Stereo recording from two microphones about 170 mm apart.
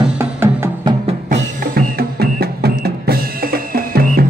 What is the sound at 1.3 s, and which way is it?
Music, 65° right (ahead or behind).